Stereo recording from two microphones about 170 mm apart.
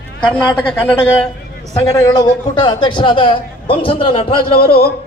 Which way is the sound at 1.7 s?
20° left (ahead or behind).